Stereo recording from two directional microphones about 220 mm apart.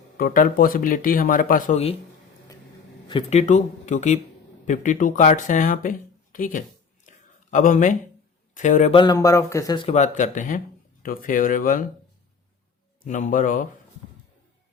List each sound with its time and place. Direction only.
0.2 s speech: 40° left (ahead or behind)
3.1 s speech: 25° left (ahead or behind)
9.9 s speech: 35° left (ahead or behind)
13.1 s speech: 35° left (ahead or behind)